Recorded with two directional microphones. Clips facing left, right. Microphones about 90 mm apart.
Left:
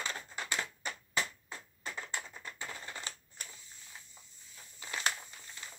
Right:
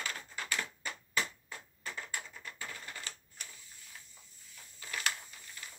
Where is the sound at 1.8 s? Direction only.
25° left (ahead or behind).